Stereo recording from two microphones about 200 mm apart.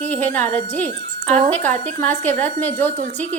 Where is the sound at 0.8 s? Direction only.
35° right (ahead or behind).